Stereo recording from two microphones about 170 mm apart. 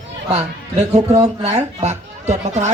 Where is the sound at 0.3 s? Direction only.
40° right (ahead or behind).